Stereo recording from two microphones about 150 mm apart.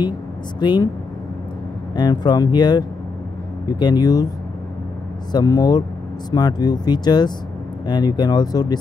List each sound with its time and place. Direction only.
0.6 s speech: 30° left (ahead or behind)
2.0 s speech: 25° left (ahead or behind)
5.3 s speech: 25° left (ahead or behind)